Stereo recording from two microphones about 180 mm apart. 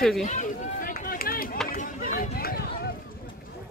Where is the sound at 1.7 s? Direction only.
50° left (ahead or behind).